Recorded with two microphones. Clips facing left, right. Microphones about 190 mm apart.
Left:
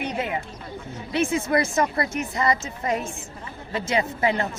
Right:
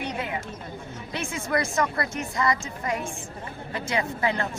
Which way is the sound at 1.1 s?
20° left (ahead or behind).